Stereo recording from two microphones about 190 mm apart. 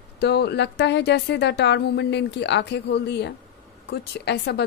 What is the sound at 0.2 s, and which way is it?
Speech, 60° left (ahead or behind).